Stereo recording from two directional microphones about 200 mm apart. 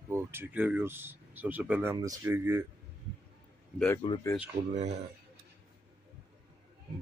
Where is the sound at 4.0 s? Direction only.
20° left (ahead or behind).